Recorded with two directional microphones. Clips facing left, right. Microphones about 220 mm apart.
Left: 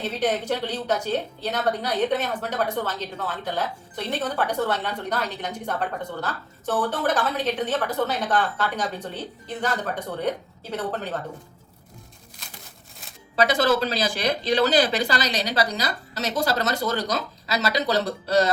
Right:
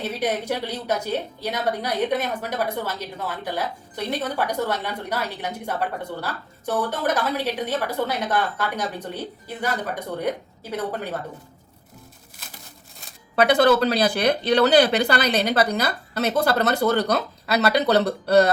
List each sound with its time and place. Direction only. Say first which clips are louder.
0.0 s a woman's voice: even; 10° right (ahead or behind)
13.3 s speech: right 4 dB; 60° right (ahead or behind)